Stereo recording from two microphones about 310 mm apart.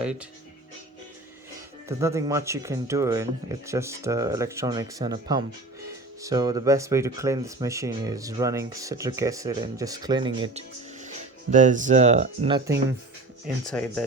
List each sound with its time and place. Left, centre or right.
0.0 s speech: centre
1.9 s speech: centre
13.7 s speech: centre